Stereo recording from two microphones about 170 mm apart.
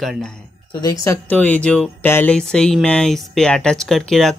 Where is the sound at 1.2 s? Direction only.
10° left (ahead or behind).